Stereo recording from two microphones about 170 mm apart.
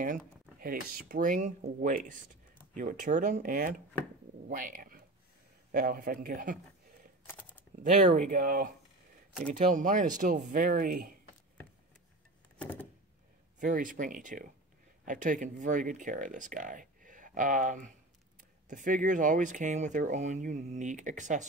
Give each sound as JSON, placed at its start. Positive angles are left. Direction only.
{"t": 0.0, "sound": "speech", "side_deg": -55}
{"t": 7.8, "sound": "speech", "side_deg": -50}
{"t": 12.5, "sound": "a sound", "side_deg": 10}
{"t": 13.6, "sound": "speech", "side_deg": -50}